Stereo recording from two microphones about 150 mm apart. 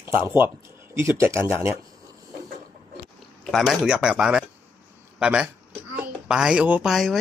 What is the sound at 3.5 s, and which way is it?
Speech, centre (ahead or behind).